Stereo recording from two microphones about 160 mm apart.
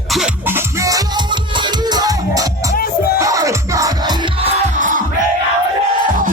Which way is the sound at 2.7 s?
70° left (ahead or behind).